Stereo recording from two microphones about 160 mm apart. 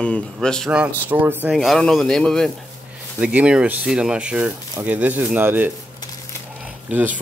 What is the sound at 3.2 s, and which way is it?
A man's voice, 5° right (ahead or behind).